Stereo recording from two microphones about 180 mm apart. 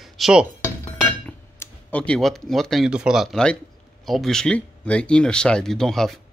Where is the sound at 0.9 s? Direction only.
5° left (ahead or behind).